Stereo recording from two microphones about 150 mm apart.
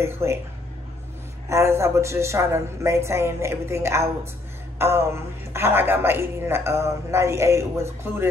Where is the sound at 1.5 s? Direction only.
20° right (ahead or behind).